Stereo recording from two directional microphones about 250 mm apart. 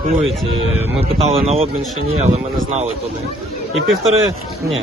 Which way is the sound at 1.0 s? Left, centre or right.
Right.